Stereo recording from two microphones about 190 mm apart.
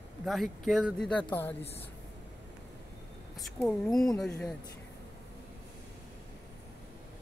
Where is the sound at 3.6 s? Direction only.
Centre (ahead or behind).